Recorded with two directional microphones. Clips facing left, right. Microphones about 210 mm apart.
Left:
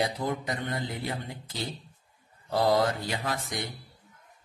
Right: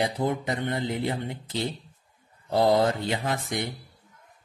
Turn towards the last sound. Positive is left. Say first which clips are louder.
# right 4 dB
turn(degrees=-25)  # may be behind; listen again after turning